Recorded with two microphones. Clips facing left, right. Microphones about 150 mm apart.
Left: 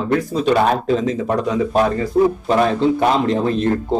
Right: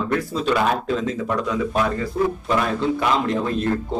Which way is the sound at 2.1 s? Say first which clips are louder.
Left 7 dB; 40° left (ahead or behind).